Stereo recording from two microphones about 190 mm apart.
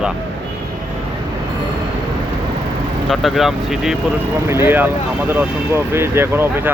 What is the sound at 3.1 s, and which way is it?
Speech, centre (ahead or behind).